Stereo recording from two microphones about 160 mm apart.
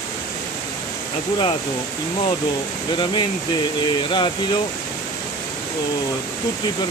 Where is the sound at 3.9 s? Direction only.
30° left (ahead or behind).